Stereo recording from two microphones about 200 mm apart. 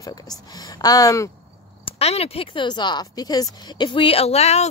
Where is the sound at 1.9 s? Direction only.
30° left (ahead or behind).